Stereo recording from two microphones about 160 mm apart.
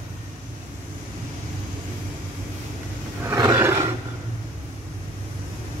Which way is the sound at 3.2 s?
15° right (ahead or behind).